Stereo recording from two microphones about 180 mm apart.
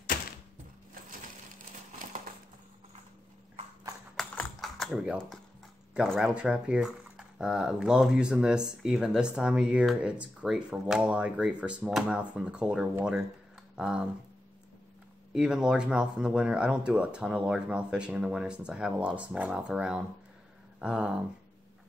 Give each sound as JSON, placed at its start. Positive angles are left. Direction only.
{"t": 4.2, "sound": "typing", "side_deg": 0}
{"t": 5.9, "sound": "speech", "side_deg": 0}
{"t": 15.3, "sound": "speech", "side_deg": -5}